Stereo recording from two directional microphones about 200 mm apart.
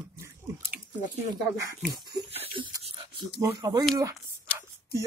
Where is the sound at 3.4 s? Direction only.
15° right (ahead or behind).